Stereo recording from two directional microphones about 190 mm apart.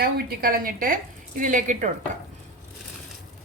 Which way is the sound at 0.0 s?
50° right (ahead or behind).